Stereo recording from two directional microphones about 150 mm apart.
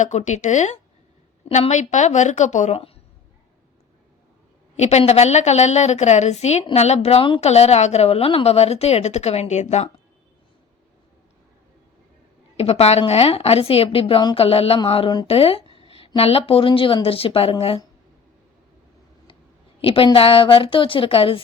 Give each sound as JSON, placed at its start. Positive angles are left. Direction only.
{"t": 0.0, "sound": "a woman's voice", "side_deg": 50}
{"t": 4.8, "sound": "a woman's voice", "side_deg": 45}
{"t": 12.5, "sound": "a woman's voice", "side_deg": 45}
{"t": 19.8, "sound": "a woman's voice", "side_deg": 35}